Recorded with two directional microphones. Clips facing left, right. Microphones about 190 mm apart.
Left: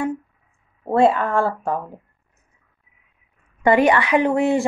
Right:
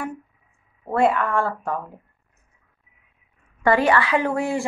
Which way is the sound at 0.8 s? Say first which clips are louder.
Left 3 dB; 25° left (ahead or behind).